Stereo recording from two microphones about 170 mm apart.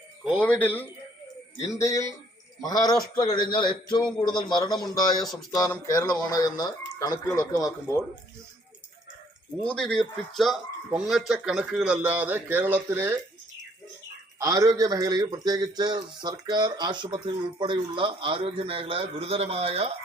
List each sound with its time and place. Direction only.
0.3 s a man's voice: 5° left (ahead or behind); by 7.1 s 20° left (ahead or behind)
9.6 s speech: 5° left (ahead or behind); by 13.1 s 15° right (ahead or behind)
14.3 s a man's voice: 20° right (ahead or behind); by 19.9 s 35° right (ahead or behind)